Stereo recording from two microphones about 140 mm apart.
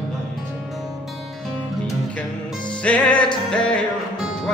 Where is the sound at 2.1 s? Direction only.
10° left (ahead or behind).